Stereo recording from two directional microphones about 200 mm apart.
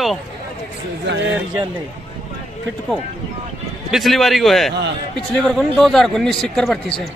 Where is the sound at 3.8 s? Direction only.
Centre (ahead or behind).